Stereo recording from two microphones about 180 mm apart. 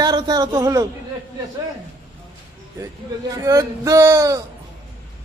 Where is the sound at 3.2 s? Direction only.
20° right (ahead or behind).